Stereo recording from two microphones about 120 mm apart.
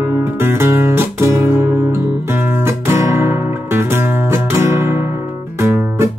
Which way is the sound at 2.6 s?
20° right (ahead or behind).